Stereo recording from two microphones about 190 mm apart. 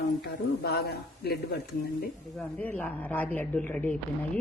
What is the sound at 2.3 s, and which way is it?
A woman's voice, 10° left (ahead or behind).